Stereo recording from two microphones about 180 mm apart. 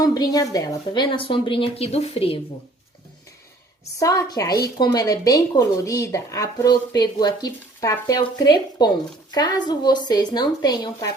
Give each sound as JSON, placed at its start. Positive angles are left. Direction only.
{"t": 0.0, "sound": "speech", "side_deg": 20}
{"t": 4.0, "sound": "speech", "side_deg": 20}